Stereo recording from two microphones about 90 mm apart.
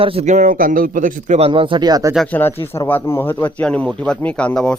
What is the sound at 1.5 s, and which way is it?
Speech, 75° right (ahead or behind).